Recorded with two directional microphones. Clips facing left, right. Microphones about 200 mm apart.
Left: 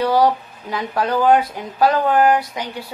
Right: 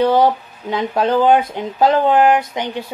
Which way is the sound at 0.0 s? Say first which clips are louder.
Right 2 dB; 25° right (ahead or behind).